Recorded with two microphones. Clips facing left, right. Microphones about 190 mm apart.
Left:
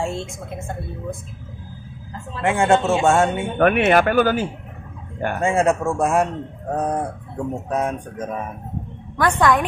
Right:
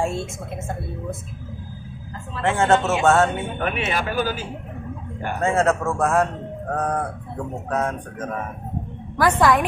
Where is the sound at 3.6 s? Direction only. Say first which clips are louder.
Left 12 dB; 60° left (ahead or behind).